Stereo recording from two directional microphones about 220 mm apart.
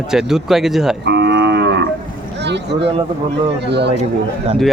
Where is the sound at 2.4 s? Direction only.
50° right (ahead or behind).